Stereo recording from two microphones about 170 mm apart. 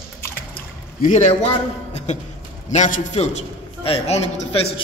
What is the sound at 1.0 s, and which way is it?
A man's voice, 45° left (ahead or behind).